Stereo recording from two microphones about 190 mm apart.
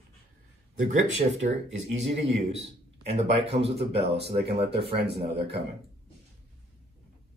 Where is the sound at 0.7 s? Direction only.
40° right (ahead or behind).